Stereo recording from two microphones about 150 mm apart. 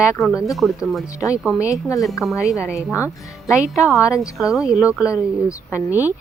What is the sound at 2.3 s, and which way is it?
Speech, 20° left (ahead or behind).